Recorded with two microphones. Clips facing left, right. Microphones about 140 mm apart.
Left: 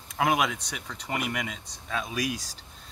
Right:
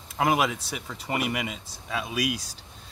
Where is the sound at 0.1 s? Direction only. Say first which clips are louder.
Right 1 dB; centre (ahead or behind).